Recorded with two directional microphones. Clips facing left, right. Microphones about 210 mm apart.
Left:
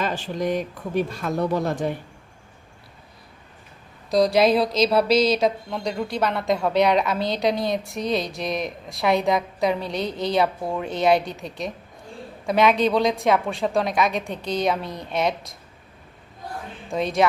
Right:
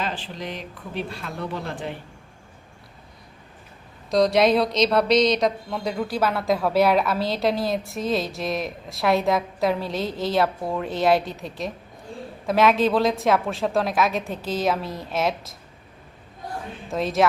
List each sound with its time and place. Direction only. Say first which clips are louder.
0.0 s speech: left 5 dB; 45° left (ahead or behind)
4.1 s a woman's voice: even; centre (ahead or behind)
16.9 s a woman's voice: even; centre (ahead or behind)